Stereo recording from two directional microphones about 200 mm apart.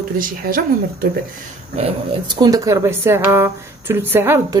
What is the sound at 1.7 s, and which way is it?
Speech, 25° right (ahead or behind).